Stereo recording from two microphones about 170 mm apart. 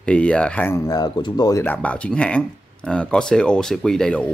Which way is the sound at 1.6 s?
10° left (ahead or behind).